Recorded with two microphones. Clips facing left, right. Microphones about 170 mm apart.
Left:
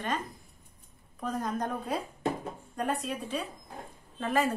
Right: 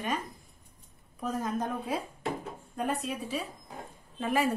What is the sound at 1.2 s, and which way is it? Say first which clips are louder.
Speech: even; 5° right (ahead or behind).